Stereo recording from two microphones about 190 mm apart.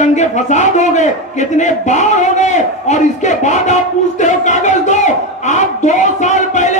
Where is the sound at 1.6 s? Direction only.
40° left (ahead or behind).